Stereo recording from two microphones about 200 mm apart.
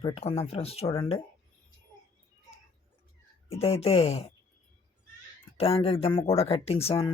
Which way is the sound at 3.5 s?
30° left (ahead or behind).